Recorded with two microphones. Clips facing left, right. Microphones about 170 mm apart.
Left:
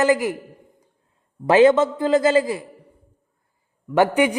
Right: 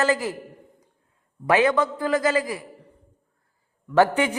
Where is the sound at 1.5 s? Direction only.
25° left (ahead or behind).